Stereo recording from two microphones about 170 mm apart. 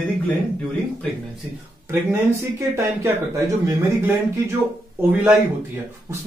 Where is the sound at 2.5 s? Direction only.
15° right (ahead or behind).